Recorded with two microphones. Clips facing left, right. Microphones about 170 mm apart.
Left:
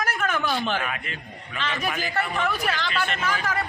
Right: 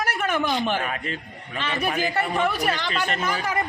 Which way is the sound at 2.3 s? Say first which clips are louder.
Right 3 dB; 10° right (ahead or behind).